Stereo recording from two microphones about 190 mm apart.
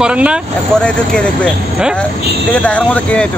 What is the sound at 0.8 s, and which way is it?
Speech, 5° left (ahead or behind).